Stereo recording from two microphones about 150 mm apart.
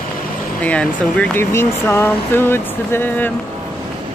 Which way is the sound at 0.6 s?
10° left (ahead or behind).